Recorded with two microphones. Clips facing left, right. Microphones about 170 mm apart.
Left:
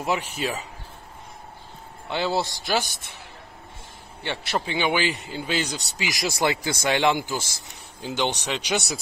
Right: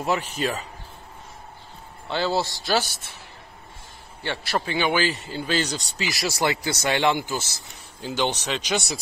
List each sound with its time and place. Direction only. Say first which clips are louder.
0.0 s speech: right 1 dB; 10° left (ahead or behind)
2.0 s a man's voice: right 1 dB; 20° left (ahead or behind)
4.2 s speech: right 1 dB; 20° left (ahead or behind)